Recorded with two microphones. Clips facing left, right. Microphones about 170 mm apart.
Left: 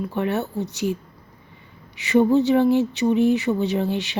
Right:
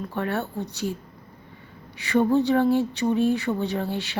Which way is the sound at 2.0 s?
15° left (ahead or behind).